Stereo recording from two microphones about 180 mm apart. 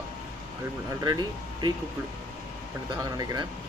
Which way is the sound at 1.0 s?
20° right (ahead or behind).